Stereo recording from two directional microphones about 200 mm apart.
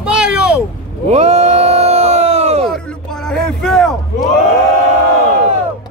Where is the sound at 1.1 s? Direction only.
30° right (ahead or behind).